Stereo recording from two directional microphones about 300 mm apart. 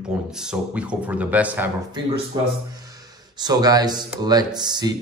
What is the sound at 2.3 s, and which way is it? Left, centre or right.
Speech, centre.